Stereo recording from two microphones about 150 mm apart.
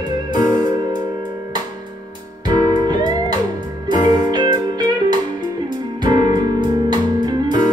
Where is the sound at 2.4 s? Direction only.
30° right (ahead or behind).